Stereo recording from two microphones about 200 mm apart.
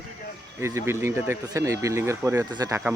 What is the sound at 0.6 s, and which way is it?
Speech, 15° right (ahead or behind).